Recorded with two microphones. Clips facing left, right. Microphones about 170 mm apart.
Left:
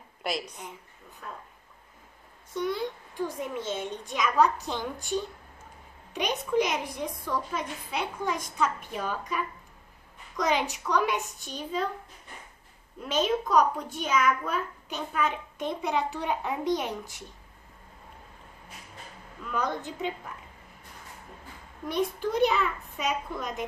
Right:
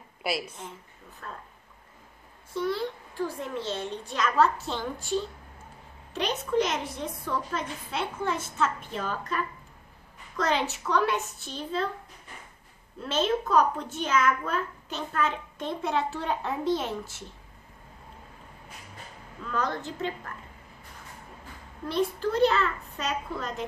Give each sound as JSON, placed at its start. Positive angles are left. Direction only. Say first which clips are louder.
{"t": 0.2, "sound": "a woman's voice", "louder": "right 1 dB", "side_deg": -5}
{"t": 1.2, "sound": "speech", "louder": "even", "side_deg": 5}
{"t": 2.5, "sound": "a child's voice", "louder": "right 1 dB", "side_deg": 20}
{"t": 6.6, "sound": "a child's voice", "louder": "even", "side_deg": 15}
{"t": 10.3, "sound": "a child's voice", "louder": "even", "side_deg": 15}
{"t": 13.0, "sound": "a child's voice", "louder": "even", "side_deg": 10}
{"t": 19.4, "sound": "a child's voice", "louder": "even", "side_deg": 15}
{"t": 21.8, "sound": "a child's voice", "louder": "right 1 dB", "side_deg": 15}